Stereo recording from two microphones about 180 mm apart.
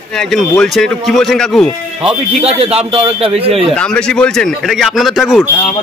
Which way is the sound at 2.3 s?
35° right (ahead or behind).